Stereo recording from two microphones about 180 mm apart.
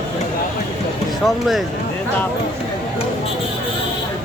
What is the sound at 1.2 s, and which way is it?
Speech, centre (ahead or behind).